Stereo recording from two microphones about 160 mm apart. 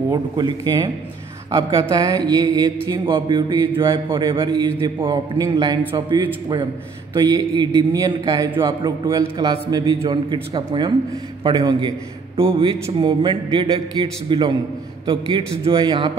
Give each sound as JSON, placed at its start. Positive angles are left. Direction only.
{"t": 0.1, "sound": "mantra", "side_deg": -25}
{"t": 12.4, "sound": "a man's voice", "side_deg": -35}